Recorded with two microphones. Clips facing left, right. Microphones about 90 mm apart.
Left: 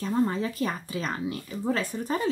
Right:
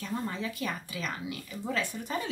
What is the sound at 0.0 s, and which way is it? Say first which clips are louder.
Speech: left 8 dB; 35° left (ahead or behind).